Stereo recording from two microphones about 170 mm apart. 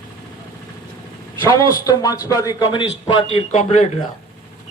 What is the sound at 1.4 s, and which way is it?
Speech, 20° left (ahead or behind).